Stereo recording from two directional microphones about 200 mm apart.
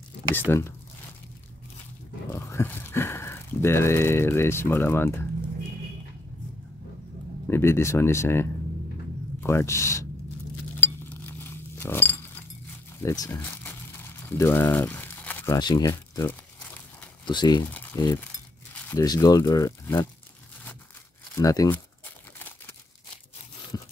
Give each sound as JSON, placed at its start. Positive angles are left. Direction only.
{"t": 0.4, "sound": "speech", "side_deg": 10}
{"t": 2.3, "sound": "speech", "side_deg": 10}
{"t": 7.4, "sound": "speech", "side_deg": 10}
{"t": 10.8, "sound": "chink", "side_deg": 10}
{"t": 13.0, "sound": "crumpling", "side_deg": 15}
{"t": 17.3, "sound": "speech", "side_deg": 20}
{"t": 21.4, "sound": "crumpling", "side_deg": 15}